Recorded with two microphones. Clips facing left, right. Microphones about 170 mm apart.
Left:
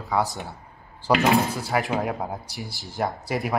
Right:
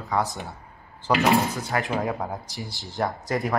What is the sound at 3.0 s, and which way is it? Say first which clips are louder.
Speech: even; 5° left (ahead or behind).